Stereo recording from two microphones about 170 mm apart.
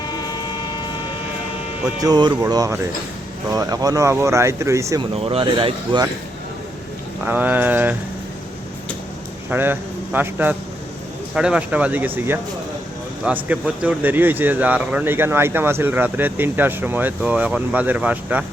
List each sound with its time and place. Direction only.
0.0 s vehicle: 25° left (ahead or behind)
2.0 s speech: 25° right (ahead or behind)
5.2 s speech: 30° right (ahead or behind)
7.3 s speech: 10° right (ahead or behind)
9.5 s a man's voice: 10° right (ahead or behind)